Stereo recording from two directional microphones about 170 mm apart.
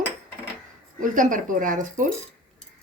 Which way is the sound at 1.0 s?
50° right (ahead or behind).